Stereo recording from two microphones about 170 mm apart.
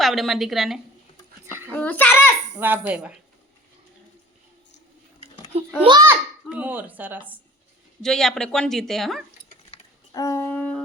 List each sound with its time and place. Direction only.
0.0 s speech: centre (ahead or behind)
1.7 s a child's voice: 10° left (ahead or behind)
2.6 s speech: 10° right (ahead or behind)
5.8 s a child's voice: 25° right (ahead or behind)
6.1 s a child's voice: 10° right (ahead or behind)
8.0 s speech: 5° left (ahead or behind)
10.1 s wind instrument: 20° left (ahead or behind)